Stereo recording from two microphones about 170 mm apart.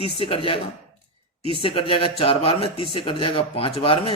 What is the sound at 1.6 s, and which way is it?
Speech, 30° left (ahead or behind).